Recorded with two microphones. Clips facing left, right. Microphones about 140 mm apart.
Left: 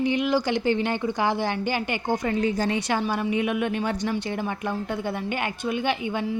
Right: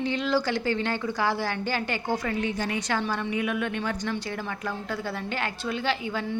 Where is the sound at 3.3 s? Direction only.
20° left (ahead or behind).